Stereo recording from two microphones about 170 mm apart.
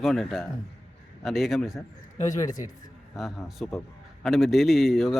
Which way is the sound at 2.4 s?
20° left (ahead or behind).